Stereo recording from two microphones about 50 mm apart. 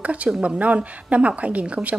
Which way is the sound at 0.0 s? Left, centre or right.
Right.